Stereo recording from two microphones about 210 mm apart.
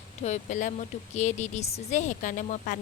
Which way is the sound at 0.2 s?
35° left (ahead or behind).